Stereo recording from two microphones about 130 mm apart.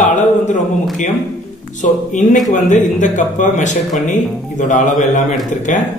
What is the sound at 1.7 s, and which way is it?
Speech, 75° left (ahead or behind).